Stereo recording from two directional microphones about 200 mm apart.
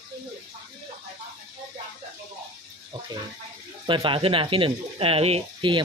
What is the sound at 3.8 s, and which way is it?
Speech, 25° right (ahead or behind).